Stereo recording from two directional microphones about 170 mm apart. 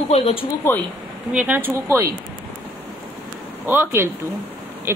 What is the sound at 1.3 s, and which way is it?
Speech, 10° right (ahead or behind).